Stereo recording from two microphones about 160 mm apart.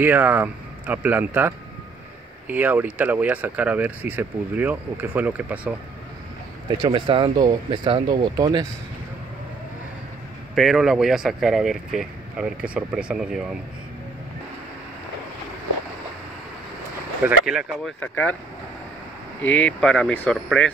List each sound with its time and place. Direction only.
0.0 s speech: 10° right (ahead or behind)
6.8 s speech: 25° right (ahead or behind)
10.5 s speech: centre (ahead or behind)
17.2 s speech: 5° right (ahead or behind)
19.4 s speech: 5° left (ahead or behind)